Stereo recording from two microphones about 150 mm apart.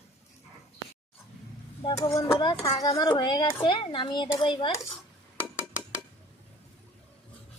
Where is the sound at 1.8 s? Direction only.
25° left (ahead or behind).